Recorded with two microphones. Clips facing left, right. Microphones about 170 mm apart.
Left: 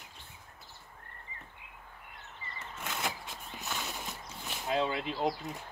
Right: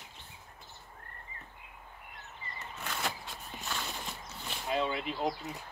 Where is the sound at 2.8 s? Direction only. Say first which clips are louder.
Even; 15° left (ahead or behind).